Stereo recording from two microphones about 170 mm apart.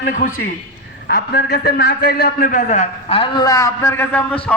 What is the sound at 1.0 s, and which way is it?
A man's voice, 70° left (ahead or behind).